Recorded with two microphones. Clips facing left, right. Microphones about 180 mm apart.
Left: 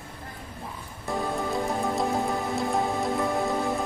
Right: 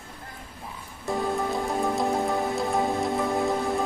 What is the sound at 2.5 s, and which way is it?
Rain on surface, centre (ahead or behind).